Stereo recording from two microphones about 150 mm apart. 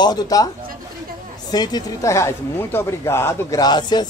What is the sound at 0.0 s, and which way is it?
Speech, 25° left (ahead or behind).